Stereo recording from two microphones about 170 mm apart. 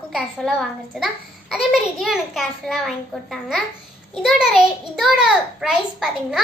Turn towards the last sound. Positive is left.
turn(degrees=0)  # may be behind; listen again after turning